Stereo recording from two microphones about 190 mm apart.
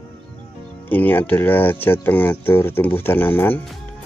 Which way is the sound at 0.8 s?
10° left (ahead or behind).